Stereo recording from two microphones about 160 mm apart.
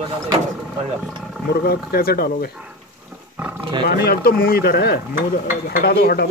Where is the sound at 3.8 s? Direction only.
70° left (ahead or behind).